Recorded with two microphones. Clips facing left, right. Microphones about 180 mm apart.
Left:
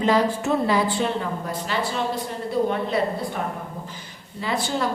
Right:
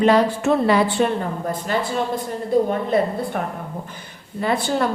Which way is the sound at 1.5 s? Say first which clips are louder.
Right 5 dB; 50° right (ahead or behind).